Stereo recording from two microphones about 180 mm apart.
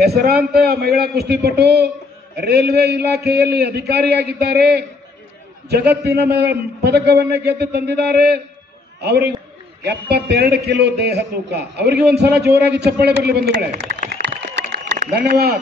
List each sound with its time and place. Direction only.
0.0 s a man's voice: 60° right (ahead or behind)
15.0 s speech: 55° right (ahead or behind)